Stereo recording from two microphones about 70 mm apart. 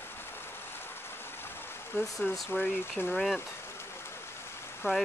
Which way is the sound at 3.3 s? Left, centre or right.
Left.